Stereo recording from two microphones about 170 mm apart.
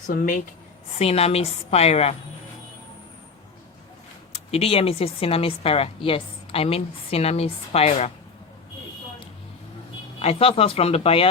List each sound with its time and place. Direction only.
0.1 s speech: 55° left (ahead or behind)
0.9 s a woman's voice: 35° left (ahead or behind)
4.5 s a woman's voice: 35° left (ahead or behind)
10.2 s a woman's voice: 35° left (ahead or behind)